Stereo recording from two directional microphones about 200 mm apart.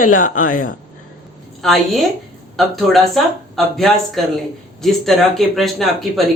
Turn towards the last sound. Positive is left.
turn(degrees=0)  # may be behind; listen again after turning